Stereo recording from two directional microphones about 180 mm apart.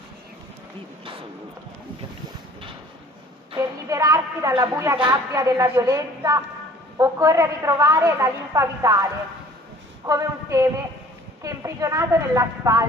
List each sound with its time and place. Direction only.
3.5 s a sound: 20° right (ahead or behind)
5.0 s a woman's voice: 15° right (ahead or behind)
10.0 s a woman's voice: 15° right (ahead or behind)